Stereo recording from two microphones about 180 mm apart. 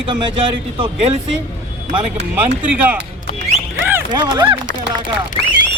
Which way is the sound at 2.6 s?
10° right (ahead or behind).